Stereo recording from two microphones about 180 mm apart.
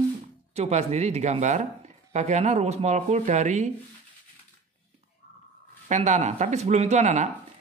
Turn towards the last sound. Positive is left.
turn(degrees=-40)  # may be behind; listen again after turning